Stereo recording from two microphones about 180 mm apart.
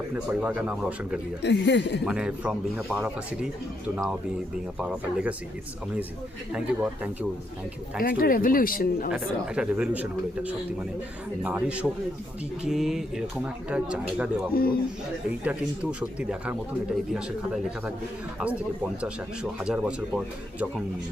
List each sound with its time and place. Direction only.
0.3 s a man's voice: 5° right (ahead or behind)
1.4 s speech: 75° left (ahead or behind)
2.0 s a man's voice: 5° right (ahead or behind)
7.9 s speech: 50° left (ahead or behind)
9.1 s a man's voice: 5° right (ahead or behind)
14.5 s a man's voice: 55° left (ahead or behind)
15.4 s a man's voice: 5° right (ahead or behind)
19.0 s speech: 5° right (ahead or behind)